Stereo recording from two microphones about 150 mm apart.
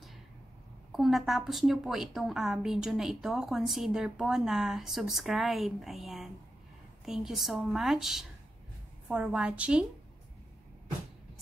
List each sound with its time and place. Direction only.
0.9 s a woman's voice: centre (ahead or behind)